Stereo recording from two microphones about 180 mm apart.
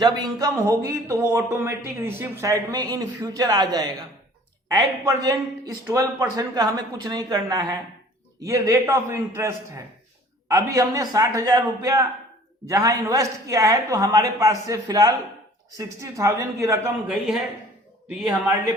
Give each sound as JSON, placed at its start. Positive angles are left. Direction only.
{"t": 0.0, "sound": "a man's voice", "side_deg": -20}
{"t": 17.1, "sound": "speech", "side_deg": -5}